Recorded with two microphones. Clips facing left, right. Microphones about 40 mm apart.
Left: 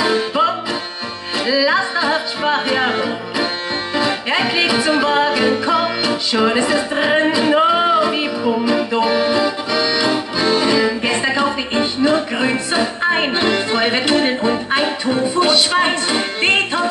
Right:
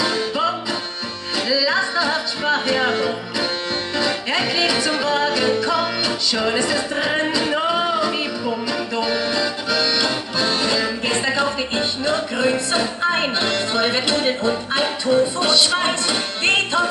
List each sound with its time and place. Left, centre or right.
0.0 s music: centre
1.5 s music: left